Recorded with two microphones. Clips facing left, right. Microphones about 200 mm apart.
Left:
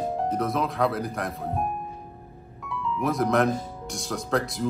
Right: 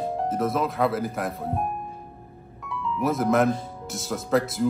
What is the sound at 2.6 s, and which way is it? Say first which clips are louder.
Music: right 1 dB; centre (ahead or behind).